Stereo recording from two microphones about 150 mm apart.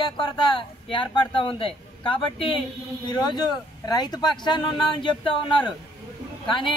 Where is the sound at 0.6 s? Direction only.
35° left (ahead or behind).